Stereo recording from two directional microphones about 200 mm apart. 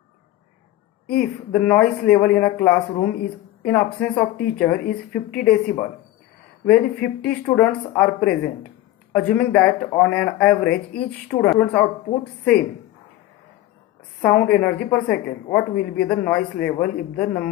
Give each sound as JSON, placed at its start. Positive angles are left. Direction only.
{"t": 1.0, "sound": "speech", "side_deg": 5}
{"t": 14.2, "sound": "speech", "side_deg": 5}